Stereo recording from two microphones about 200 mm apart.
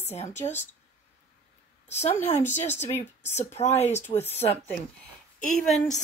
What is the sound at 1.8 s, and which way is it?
A woman's voice, 35° left (ahead or behind).